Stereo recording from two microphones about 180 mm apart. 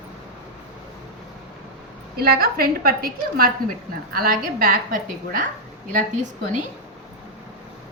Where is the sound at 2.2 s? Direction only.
60° right (ahead or behind).